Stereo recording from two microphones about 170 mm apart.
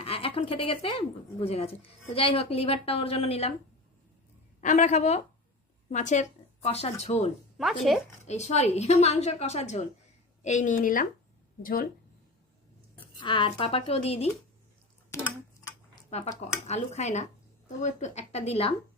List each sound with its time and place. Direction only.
0.0 s a woman's voice: 35° left (ahead or behind)
4.6 s a woman's voice: 45° left (ahead or behind)
7.6 s speech: centre (ahead or behind)
8.3 s a woman's voice: 40° left (ahead or behind); by 11.9 s 60° left (ahead or behind)
13.1 s a woman's voice: 30° left (ahead or behind)
15.1 s tick-tock: 15° left (ahead or behind)
16.0 s a woman's voice: 40° left (ahead or behind)